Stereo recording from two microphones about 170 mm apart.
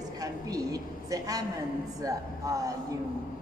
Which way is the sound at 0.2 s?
20° right (ahead or behind).